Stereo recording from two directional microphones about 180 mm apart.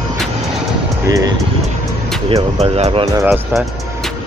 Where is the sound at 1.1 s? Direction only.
20° right (ahead or behind).